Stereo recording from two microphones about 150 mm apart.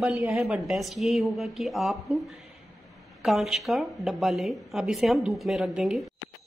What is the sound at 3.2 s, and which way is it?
Speech, centre (ahead or behind).